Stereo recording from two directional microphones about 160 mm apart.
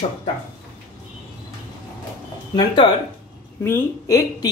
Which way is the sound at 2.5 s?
30° left (ahead or behind).